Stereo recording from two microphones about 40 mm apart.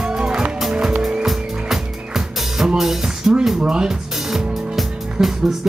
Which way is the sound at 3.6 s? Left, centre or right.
Right.